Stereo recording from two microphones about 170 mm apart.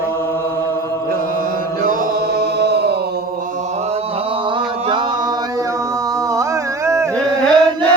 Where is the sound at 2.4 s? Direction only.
75° right (ahead or behind).